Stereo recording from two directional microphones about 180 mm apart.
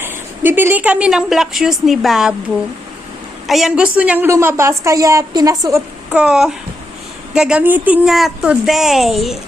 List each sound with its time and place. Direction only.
0.0 s a woman's voice: 10° right (ahead or behind)
3.4 s a woman's voice: centre (ahead or behind); by 5.8 s 20° right (ahead or behind)
6.1 s a woman's voice: 5° right (ahead or behind)